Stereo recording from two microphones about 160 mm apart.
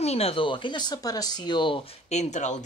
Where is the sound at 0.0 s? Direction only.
40° left (ahead or behind).